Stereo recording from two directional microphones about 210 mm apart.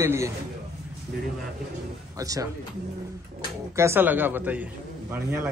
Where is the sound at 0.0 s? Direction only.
10° right (ahead or behind).